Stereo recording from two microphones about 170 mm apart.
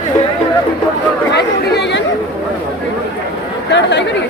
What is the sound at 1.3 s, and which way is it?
Chatter, 85° left.